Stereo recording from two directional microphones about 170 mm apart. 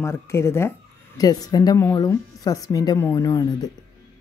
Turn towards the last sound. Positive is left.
turn(degrees=25)  # may be behind; listen again after turning